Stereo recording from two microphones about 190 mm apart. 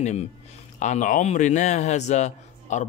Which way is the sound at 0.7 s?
40° left (ahead or behind).